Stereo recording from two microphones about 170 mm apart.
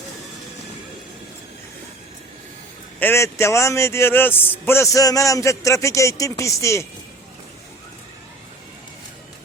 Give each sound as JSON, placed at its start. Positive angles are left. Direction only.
{"t": 3.0, "sound": "a man's voice", "side_deg": 15}